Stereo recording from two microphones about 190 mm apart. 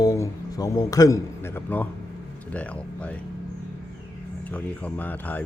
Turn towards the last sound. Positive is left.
turn(degrees=10)  # may be behind; listen again after turning